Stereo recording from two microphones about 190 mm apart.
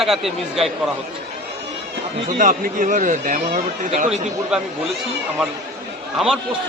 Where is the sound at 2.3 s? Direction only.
45° right (ahead or behind).